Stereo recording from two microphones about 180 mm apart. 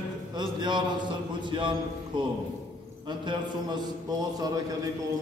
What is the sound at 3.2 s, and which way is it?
Speech, 25° right (ahead or behind).